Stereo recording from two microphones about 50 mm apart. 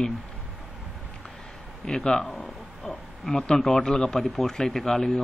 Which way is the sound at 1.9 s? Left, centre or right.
Centre.